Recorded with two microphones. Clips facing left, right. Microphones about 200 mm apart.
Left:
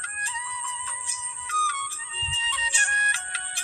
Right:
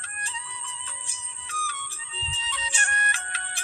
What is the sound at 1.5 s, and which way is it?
Music, 30° right (ahead or behind).